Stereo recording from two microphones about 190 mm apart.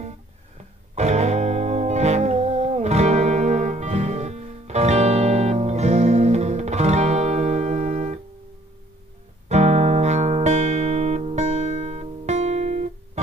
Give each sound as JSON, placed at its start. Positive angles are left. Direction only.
{"t": 0.9, "sound": "music", "side_deg": -35}
{"t": 9.5, "sound": "music", "side_deg": -35}